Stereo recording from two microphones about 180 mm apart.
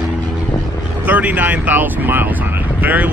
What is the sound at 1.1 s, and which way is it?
Speech, 10° right (ahead or behind).